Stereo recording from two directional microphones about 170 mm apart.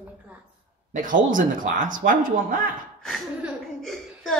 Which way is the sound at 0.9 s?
50° right (ahead or behind).